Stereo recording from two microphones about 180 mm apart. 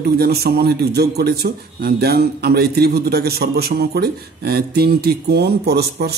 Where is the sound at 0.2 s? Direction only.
60° right (ahead or behind).